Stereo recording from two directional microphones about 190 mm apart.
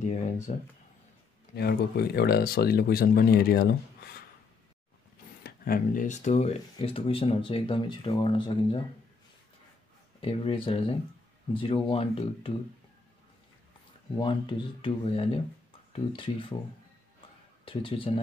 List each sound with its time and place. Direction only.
0.0 s speech: 40° left (ahead or behind)
1.5 s speech: 60° left (ahead or behind)
5.4 s speech: 45° left (ahead or behind); by 8.8 s 25° left (ahead or behind)
10.2 s speech: 30° left (ahead or behind)
14.1 s speech: 25° left (ahead or behind)
17.6 s speech: 30° left (ahead or behind)